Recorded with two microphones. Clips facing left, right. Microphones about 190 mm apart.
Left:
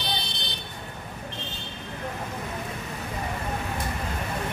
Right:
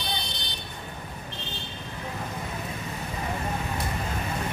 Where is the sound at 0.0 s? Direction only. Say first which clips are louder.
Left 1 dB; 65° left (ahead or behind).